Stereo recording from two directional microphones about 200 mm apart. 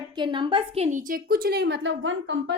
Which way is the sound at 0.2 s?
25° right (ahead or behind).